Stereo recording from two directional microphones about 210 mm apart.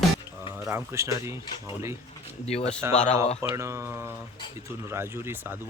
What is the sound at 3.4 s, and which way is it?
Speech, 15° right (ahead or behind).